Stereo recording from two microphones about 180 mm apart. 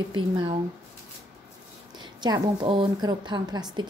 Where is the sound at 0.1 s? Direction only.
25° right (ahead or behind).